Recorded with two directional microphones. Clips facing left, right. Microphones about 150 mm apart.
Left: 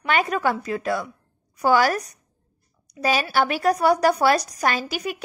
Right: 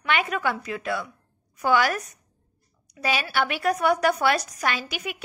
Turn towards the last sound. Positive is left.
turn(degrees=40)  # may be behind; listen again after turning